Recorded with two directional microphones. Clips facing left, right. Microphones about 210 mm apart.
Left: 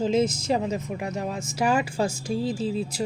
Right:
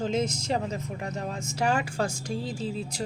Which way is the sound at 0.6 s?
20° left (ahead or behind).